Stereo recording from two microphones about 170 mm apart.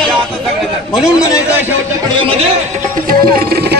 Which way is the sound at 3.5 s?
70° right (ahead or behind).